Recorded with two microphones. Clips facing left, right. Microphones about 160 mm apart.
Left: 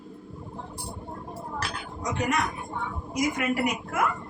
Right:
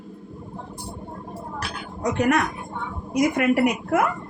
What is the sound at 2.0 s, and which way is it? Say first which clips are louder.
A woman's voice: right 7 dB; 60° right (ahead or behind).